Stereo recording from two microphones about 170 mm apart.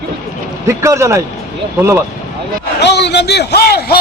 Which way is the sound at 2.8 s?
85° left.